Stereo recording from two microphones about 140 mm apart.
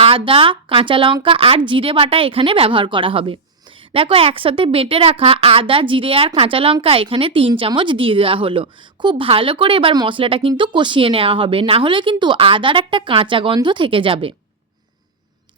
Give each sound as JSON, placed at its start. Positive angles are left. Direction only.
{"t": 0.0, "sound": "a woman's voice", "side_deg": -40}